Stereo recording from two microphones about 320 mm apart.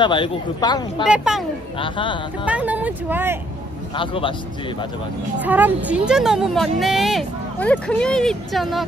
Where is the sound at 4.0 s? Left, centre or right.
Centre.